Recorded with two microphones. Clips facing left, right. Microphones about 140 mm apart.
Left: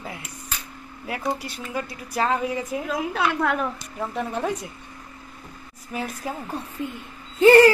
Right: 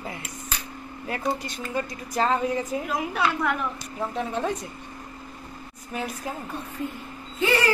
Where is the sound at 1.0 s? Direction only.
5° left (ahead or behind).